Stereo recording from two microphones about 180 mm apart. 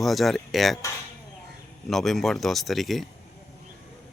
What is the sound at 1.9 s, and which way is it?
Speech, centre (ahead or behind).